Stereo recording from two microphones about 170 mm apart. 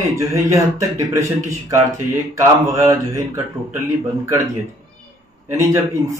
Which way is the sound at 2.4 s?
20° right (ahead or behind).